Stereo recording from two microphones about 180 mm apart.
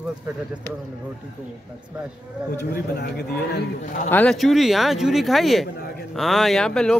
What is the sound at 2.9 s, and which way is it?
Speech, 65° left (ahead or behind).